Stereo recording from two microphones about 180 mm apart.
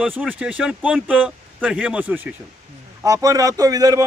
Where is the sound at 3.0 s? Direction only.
20° right (ahead or behind).